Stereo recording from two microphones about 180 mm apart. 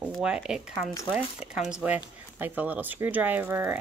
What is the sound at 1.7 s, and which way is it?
Speech, 10° right (ahead or behind).